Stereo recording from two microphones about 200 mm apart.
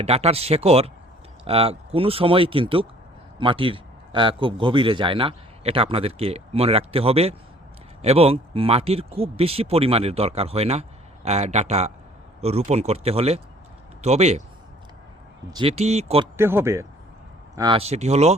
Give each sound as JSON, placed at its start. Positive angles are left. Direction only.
{"t": 0.0, "sound": "speech", "side_deg": -30}
{"t": 15.4, "sound": "speech", "side_deg": -25}
{"t": 16.4, "sound": "a man's voice", "side_deg": -10}